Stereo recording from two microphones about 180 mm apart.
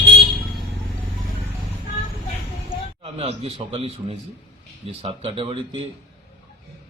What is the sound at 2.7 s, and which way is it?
Speech, 30° right (ahead or behind).